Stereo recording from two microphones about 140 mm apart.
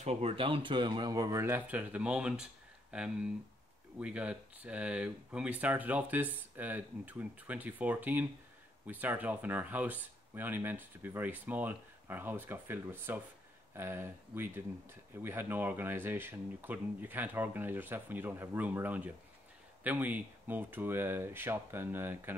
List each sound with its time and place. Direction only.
0.0 s speech: 45° right (ahead or behind); by 22.3 s 15° right (ahead or behind)